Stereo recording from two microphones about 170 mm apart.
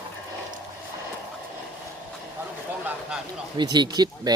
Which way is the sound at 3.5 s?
25° right (ahead or behind).